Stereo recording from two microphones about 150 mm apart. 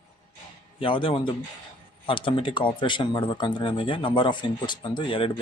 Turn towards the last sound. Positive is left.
turn(degrees=35)  # may be behind; listen again after turning